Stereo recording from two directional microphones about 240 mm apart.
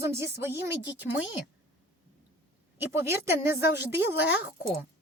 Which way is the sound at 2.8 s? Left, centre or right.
Centre.